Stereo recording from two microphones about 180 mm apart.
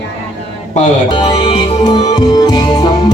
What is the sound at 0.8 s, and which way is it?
Speech, 40° left (ahead or behind).